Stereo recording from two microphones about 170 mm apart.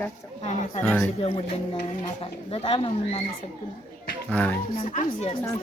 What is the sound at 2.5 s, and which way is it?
Speech, 35° left (ahead or behind).